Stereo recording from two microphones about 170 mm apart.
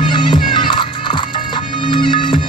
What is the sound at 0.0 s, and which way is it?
Music, 25° left (ahead or behind).